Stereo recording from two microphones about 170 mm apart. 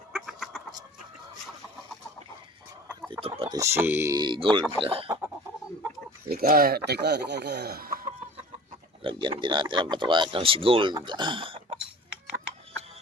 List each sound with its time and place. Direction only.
0.1 s chicken: centre (ahead or behind)
3.1 s speech: 35° right (ahead or behind)
3.5 s speech: 15° right (ahead or behind); by 5.0 s 35° right (ahead or behind)
6.3 s speech: 60° right (ahead or behind)
9.0 s speech: 30° right (ahead or behind)